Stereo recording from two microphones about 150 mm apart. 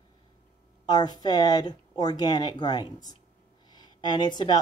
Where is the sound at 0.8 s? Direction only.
25° left (ahead or behind).